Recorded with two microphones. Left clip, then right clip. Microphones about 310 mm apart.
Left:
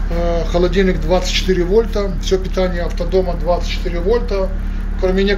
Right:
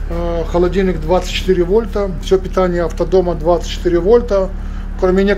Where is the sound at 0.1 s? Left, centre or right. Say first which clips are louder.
Even; centre.